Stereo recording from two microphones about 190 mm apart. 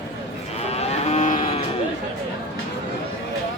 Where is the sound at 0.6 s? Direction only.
35° left (ahead or behind).